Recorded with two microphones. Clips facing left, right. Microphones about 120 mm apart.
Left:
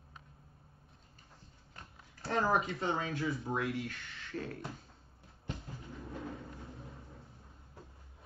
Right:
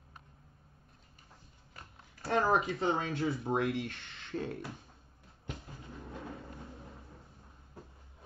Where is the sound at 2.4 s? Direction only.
25° right (ahead or behind).